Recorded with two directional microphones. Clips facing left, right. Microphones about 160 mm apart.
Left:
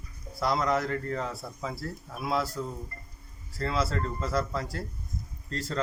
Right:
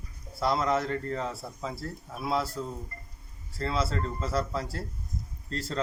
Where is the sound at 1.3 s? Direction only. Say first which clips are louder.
Even; centre (ahead or behind).